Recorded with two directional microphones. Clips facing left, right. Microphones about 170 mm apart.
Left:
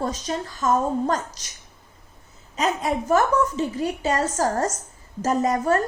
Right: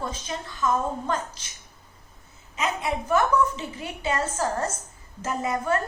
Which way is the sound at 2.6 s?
40° left (ahead or behind).